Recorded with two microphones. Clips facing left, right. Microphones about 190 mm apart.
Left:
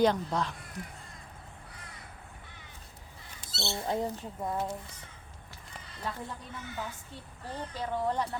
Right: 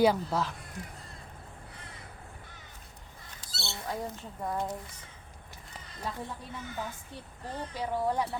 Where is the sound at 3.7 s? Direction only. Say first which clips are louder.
Left 5 dB; 25° left (ahead or behind).